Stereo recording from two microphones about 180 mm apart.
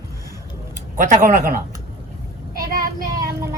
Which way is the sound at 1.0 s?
45° right (ahead or behind).